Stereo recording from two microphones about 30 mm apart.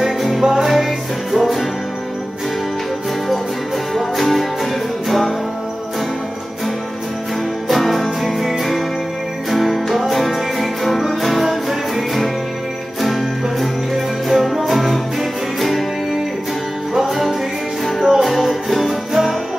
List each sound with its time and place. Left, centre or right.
0.4 s music: centre
0.7 s music: centre
3.9 s music: centre
8.0 s music: centre
13.0 s music: centre
17.1 s music: centre